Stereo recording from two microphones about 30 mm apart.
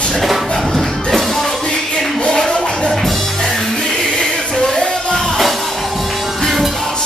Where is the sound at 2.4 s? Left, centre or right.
Left.